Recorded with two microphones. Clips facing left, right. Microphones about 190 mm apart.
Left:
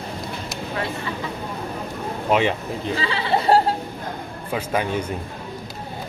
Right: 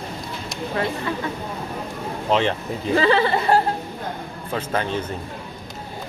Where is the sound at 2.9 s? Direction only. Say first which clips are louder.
Right 8 dB; 50° right (ahead or behind).